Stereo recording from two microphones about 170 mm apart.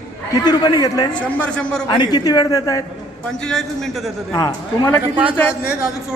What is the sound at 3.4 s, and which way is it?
Speech, 5° left (ahead or behind).